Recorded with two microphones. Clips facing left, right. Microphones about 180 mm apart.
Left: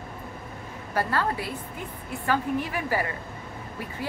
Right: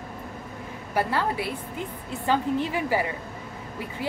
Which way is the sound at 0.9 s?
15° right (ahead or behind).